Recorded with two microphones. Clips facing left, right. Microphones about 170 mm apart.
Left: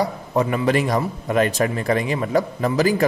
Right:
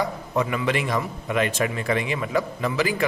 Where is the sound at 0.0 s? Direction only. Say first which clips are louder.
Left 4 dB; 35° left (ahead or behind).